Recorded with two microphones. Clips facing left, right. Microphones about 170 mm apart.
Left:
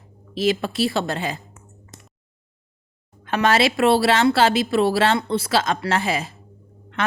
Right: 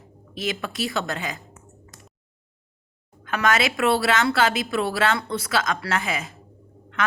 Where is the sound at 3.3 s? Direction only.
30° left (ahead or behind).